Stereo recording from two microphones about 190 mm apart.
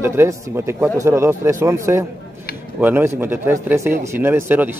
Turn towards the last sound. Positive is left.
turn(degrees=-10)  # may be behind; listen again after turning